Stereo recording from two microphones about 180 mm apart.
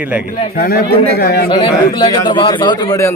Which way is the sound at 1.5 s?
25° left (ahead or behind).